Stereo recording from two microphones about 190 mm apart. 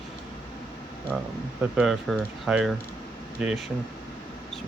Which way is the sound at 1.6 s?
Centre (ahead or behind).